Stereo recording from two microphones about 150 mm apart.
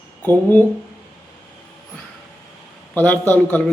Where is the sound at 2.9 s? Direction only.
10° left (ahead or behind).